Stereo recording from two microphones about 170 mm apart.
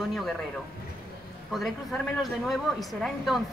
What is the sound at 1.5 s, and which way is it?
Speech, centre (ahead or behind).